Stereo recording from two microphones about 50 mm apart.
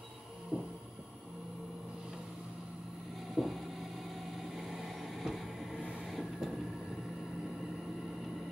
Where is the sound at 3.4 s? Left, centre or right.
Centre.